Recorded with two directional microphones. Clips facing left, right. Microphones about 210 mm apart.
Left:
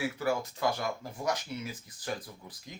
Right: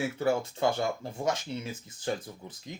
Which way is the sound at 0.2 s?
25° right (ahead or behind).